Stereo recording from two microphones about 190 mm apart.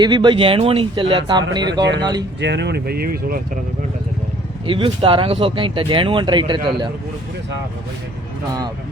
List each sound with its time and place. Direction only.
0.0 s speech: 25° right (ahead or behind)
2.4 s speech: 65° right (ahead or behind)
4.6 s speech: 30° right (ahead or behind)